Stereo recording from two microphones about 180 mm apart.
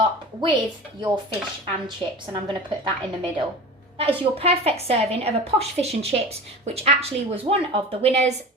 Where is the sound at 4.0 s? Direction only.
35° right (ahead or behind).